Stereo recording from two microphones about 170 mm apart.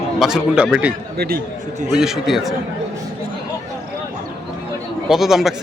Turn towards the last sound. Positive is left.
turn(degrees=0)  # may be behind; listen again after turning